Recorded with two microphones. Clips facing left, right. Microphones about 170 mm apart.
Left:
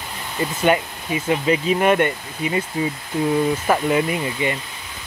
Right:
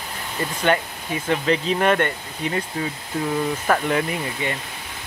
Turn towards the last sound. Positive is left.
turn(degrees=10)  # may be behind; listen again after turning